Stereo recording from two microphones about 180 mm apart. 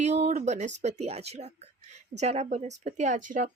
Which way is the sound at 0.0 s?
40° right (ahead or behind).